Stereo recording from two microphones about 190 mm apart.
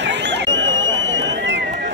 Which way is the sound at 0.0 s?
65° right (ahead or behind).